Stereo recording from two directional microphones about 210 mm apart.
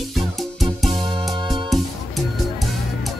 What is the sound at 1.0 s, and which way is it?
Music, 25° right (ahead or behind).